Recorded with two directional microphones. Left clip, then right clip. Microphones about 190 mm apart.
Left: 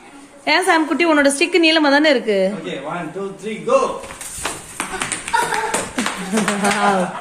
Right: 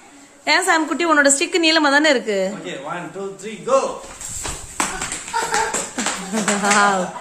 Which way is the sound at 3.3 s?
30° right (ahead or behind).